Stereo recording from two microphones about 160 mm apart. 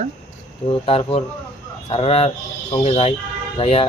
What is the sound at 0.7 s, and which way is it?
Speech, 35° left (ahead or behind).